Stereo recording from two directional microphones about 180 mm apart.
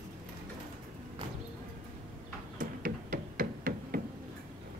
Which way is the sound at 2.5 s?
50° right (ahead or behind).